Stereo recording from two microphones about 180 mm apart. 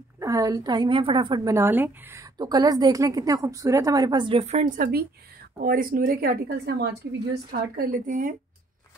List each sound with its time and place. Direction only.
0.2 s a woman's voice: 20° right (ahead or behind); by 7.0 s 65° right (ahead or behind)
7.5 s a woman's voice: 55° right (ahead or behind)